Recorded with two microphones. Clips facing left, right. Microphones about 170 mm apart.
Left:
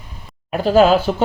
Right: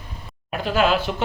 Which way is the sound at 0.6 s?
40° left (ahead or behind).